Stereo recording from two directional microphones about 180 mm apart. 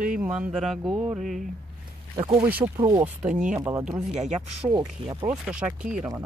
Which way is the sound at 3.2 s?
5° right (ahead or behind).